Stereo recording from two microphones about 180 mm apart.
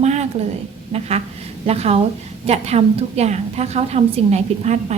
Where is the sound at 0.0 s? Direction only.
40° right (ahead or behind).